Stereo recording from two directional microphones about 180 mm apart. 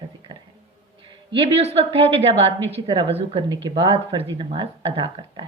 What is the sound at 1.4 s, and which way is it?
A woman's voice, 30° right (ahead or behind).